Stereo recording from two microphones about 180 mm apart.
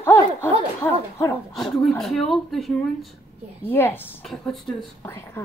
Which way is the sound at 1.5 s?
Centre (ahead or behind).